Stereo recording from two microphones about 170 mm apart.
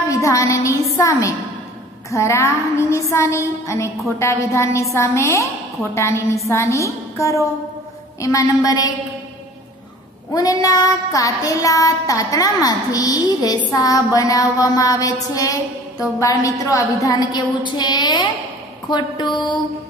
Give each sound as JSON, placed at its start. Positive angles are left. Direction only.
{"t": 0.1, "sound": "a woman's voice", "side_deg": 20}
{"t": 8.2, "sound": "child singing", "side_deg": 20}
{"t": 10.3, "sound": "child singing", "side_deg": 20}